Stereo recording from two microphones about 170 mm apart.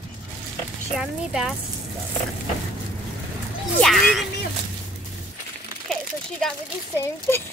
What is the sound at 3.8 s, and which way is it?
Speech, centre (ahead or behind).